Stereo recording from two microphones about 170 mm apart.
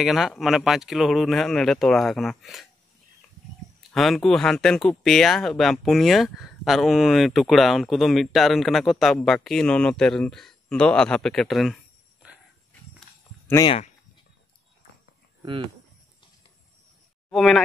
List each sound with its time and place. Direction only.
0.0 s speech: centre (ahead or behind)
3.9 s speech: centre (ahead or behind)
13.7 s speech: 40° left (ahead or behind)
17.3 s speech: centre (ahead or behind)